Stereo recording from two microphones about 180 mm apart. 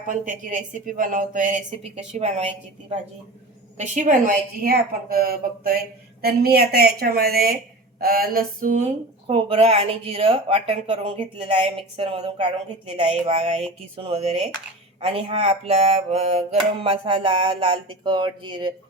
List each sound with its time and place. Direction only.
0.1 s speech: 45° right (ahead or behind)
3.8 s speech: 40° right (ahead or behind)
4.6 s a woman's voice: 55° right (ahead or behind)
9.2 s mantra: 30° right (ahead or behind)